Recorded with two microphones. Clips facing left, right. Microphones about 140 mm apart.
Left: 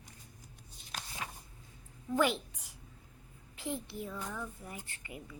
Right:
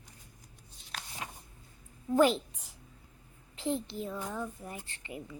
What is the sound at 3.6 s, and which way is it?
Child singing, 30° right (ahead or behind).